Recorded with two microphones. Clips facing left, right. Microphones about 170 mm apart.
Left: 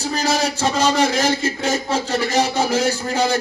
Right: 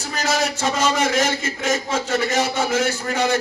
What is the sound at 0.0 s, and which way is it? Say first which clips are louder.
A man's voice: left 2 dB; 35° left (ahead or behind).